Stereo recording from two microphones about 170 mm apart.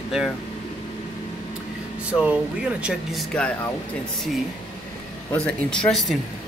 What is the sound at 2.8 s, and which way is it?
Speech, 5° left (ahead or behind).